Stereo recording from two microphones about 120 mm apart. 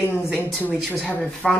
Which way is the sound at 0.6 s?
10° left (ahead or behind).